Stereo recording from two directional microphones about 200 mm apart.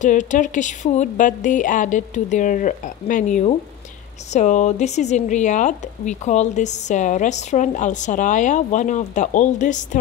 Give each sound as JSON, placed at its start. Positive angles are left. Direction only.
{"t": 0.0, "sound": "speech", "side_deg": 40}